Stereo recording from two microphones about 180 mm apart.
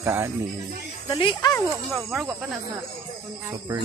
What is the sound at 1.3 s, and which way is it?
Speech, 15° left (ahead or behind).